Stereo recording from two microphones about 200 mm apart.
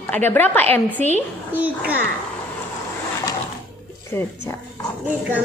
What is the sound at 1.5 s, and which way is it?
Speech, 10° right (ahead or behind).